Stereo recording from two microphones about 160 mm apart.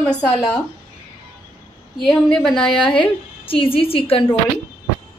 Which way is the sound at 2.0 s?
5° left (ahead or behind).